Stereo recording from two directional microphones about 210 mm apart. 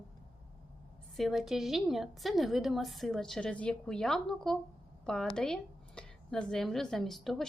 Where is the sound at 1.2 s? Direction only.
Centre (ahead or behind).